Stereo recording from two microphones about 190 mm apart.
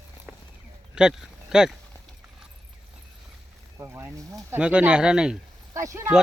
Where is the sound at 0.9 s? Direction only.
5° right (ahead or behind).